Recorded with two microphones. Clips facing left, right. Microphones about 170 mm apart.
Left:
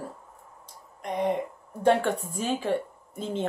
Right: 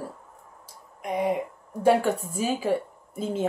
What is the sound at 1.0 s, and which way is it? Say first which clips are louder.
Speech: right 1 dB; 5° right (ahead or behind).